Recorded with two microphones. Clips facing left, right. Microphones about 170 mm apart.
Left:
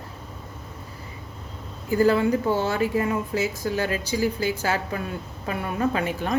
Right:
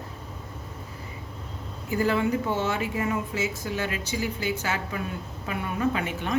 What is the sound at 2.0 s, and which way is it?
Speech, 35° left (ahead or behind).